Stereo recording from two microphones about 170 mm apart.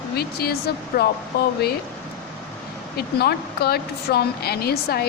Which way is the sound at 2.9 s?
70° left (ahead or behind).